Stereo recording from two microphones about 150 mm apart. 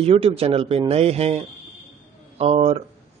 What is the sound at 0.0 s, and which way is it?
Speech, 40° right (ahead or behind).